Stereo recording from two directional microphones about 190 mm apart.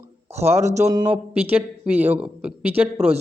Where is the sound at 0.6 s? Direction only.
35° right (ahead or behind).